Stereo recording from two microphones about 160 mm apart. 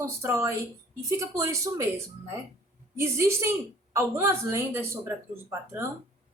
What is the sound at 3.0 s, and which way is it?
A woman's voice, 15° right (ahead or behind).